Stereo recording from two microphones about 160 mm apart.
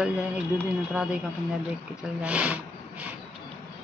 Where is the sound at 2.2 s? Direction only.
10° right (ahead or behind).